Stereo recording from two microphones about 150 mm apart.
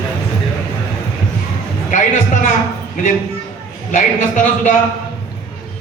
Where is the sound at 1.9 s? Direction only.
55° left (ahead or behind).